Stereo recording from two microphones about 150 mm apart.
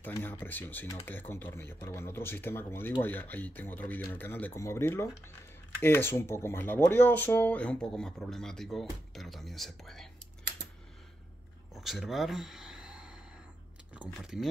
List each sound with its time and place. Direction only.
0.0 s speech: 10° left (ahead or behind)
11.7 s a sound: centre (ahead or behind)
13.9 s speech: 5° right (ahead or behind)